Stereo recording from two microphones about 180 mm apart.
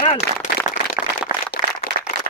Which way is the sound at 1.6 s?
45° right (ahead or behind).